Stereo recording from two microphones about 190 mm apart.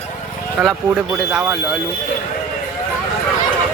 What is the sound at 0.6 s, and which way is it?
Speech, 5° right (ahead or behind).